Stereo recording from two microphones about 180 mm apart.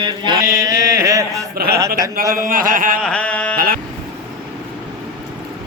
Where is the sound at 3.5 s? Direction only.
50° right (ahead or behind).